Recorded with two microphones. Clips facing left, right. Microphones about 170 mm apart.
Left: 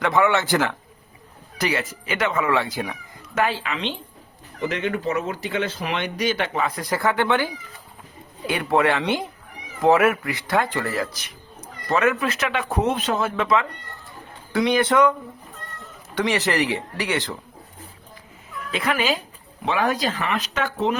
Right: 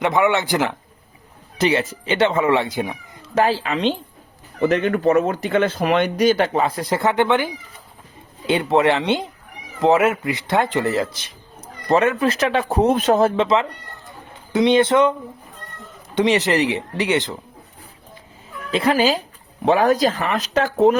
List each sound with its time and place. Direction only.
0.0 s speech: 20° right (ahead or behind)
3.3 s speech: 35° right (ahead or behind)
13.3 s speech: 25° right (ahead or behind)
16.1 s speech: 20° right (ahead or behind)
18.7 s speech: 30° right (ahead or behind)